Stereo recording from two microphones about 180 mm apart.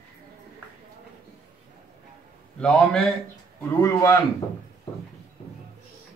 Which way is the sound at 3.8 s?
15° left (ahead or behind).